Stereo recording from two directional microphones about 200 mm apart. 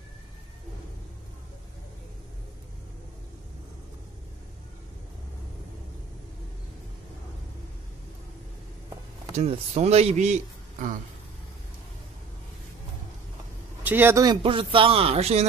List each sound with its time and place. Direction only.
9.4 s a man's voice: 30° right (ahead or behind)
13.8 s a man's voice: 10° right (ahead or behind); by 15.4 s 30° right (ahead or behind)